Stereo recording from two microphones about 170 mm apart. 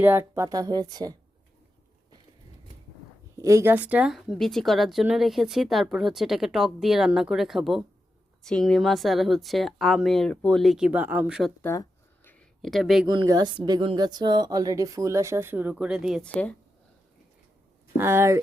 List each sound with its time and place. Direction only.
0.0 s speech: 15° right (ahead or behind)
3.3 s speech: 15° right (ahead or behind)
11.6 s a sound: 15° left (ahead or behind)
13.1 s speech: 20° right (ahead or behind); by 16.3 s centre (ahead or behind)
17.9 s speech: 15° right (ahead or behind)